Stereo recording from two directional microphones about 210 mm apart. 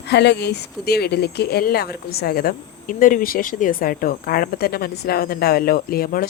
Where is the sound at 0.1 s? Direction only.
55° left (ahead or behind).